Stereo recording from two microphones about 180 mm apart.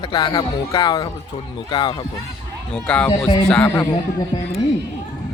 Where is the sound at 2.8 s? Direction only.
5° left (ahead or behind).